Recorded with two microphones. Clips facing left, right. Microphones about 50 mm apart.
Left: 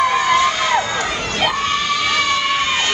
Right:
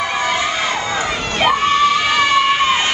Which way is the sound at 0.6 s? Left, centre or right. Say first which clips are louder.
Left 2 dB; centre.